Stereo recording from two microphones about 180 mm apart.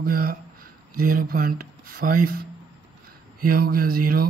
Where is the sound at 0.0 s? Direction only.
55° right (ahead or behind).